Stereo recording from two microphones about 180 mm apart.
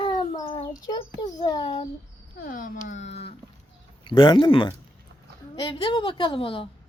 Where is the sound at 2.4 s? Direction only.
50° left (ahead or behind).